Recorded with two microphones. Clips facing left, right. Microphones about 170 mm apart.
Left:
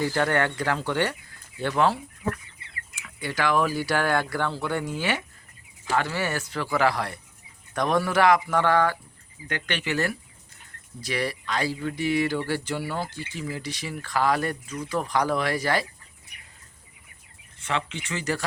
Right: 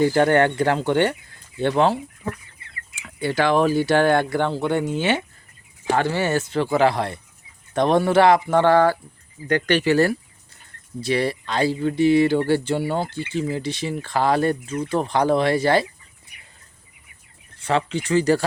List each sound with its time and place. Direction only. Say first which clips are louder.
0.0 s speech: right 7 dB; 25° right (ahead or behind)
3.1 s speech: right 6 dB; 30° right (ahead or behind)
17.6 s speech: right 8 dB; 35° right (ahead or behind)